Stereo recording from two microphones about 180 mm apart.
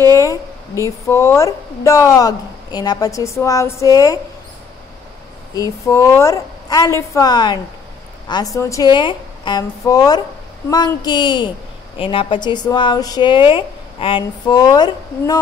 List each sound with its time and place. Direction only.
0.0 s a woman's voice: 15° left (ahead or behind)
5.5 s a woman's voice: 20° left (ahead or behind)